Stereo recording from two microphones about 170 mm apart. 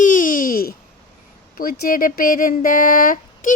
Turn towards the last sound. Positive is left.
turn(degrees=55)  # may be behind; listen again after turning